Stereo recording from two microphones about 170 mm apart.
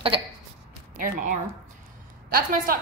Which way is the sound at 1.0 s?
55° right (ahead or behind).